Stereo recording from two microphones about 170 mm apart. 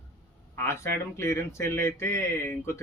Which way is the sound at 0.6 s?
15° left (ahead or behind).